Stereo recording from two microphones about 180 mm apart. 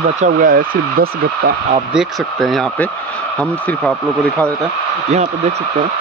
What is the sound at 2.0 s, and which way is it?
Speech, centre (ahead or behind).